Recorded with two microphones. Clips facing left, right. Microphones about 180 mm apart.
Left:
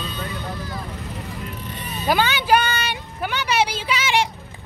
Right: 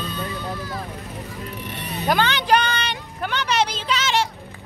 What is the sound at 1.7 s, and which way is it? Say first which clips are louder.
Vehicle: right 3 dB; 70° right (ahead or behind).